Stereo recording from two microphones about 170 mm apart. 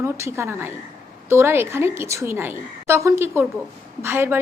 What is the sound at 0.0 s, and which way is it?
A woman's voice, 15° right (ahead or behind).